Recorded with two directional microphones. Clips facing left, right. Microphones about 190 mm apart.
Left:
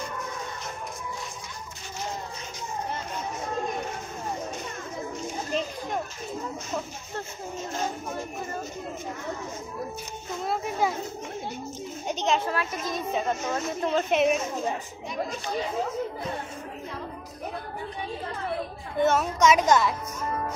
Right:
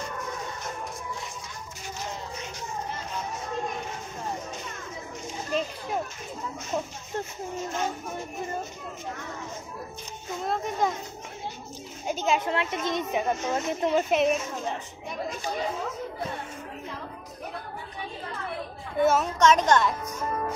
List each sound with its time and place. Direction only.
10.4 s a woman's voice: 5° left (ahead or behind)
12.1 s speech: 5° right (ahead or behind)
12.4 s speech: 25° right (ahead or behind)
14.1 s a woman's voice: centre (ahead or behind)
18.9 s a woman's voice: 5° right (ahead or behind)
19.4 s a woman's voice: 10° left (ahead or behind)